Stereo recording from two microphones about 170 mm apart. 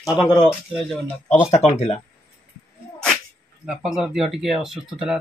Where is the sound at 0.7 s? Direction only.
5° left (ahead or behind).